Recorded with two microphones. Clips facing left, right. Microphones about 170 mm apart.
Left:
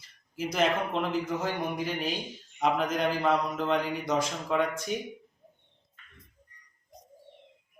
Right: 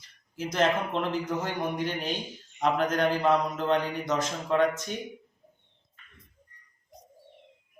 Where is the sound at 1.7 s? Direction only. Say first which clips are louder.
Right 1 dB; 5° left (ahead or behind).